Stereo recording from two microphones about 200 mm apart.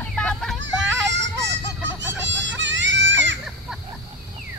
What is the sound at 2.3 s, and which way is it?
Goat, 65° right (ahead or behind).